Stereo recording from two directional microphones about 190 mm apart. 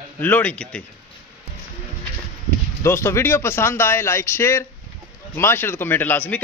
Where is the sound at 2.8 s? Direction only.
15° left (ahead or behind).